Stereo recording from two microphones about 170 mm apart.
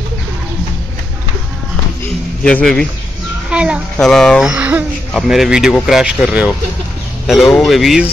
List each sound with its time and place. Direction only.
2.4 s a child's voice: 5° left (ahead or behind)
3.4 s a child's voice: 5° right (ahead or behind)
7.5 s a child's voice: centre (ahead or behind)